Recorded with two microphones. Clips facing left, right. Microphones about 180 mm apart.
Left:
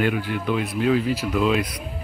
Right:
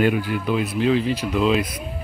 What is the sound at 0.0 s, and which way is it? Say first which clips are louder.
Speech: right 3 dB; 40° right (ahead or behind).